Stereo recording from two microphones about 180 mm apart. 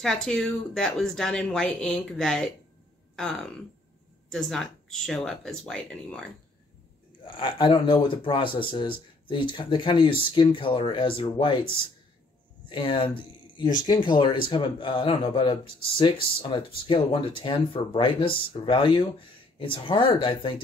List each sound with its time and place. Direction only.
0.0 s speech: 5° left (ahead or behind)
7.2 s speech: 25° left (ahead or behind)
12.6 s speech: 25° left (ahead or behind)